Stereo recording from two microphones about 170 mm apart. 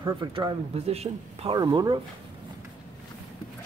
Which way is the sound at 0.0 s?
25° right (ahead or behind).